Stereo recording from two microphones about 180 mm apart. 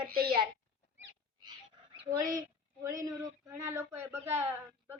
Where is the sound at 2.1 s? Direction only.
20° right (ahead or behind).